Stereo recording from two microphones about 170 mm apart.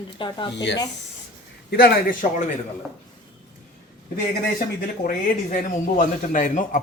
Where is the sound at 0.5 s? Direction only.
90° left.